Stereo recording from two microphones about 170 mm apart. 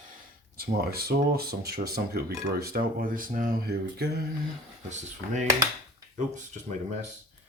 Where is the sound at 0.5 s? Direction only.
65° right (ahead or behind).